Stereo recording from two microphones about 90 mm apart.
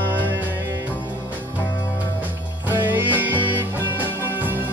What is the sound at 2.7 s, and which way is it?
Music, 20° right (ahead or behind).